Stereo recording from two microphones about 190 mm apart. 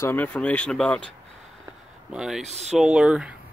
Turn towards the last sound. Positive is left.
turn(degrees=-5)  # may be behind; listen again after turning